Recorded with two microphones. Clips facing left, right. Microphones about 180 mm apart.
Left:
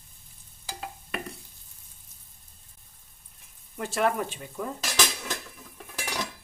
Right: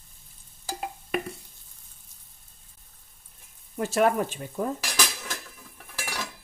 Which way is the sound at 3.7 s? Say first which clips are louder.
Right 5 dB; 45° right (ahead or behind).